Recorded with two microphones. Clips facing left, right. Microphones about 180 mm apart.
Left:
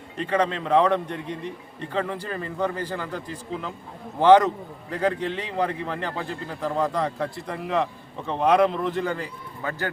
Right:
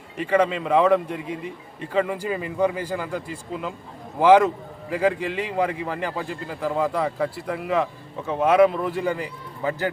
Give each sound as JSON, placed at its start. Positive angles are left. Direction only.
{"t": 0.2, "sound": "a man's voice", "side_deg": -10}